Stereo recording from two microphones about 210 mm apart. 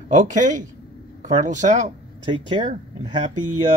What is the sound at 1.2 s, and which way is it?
Speech, 35° right (ahead or behind).